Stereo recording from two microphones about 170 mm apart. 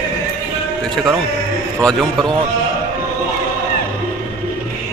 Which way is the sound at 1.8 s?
Centre (ahead or behind).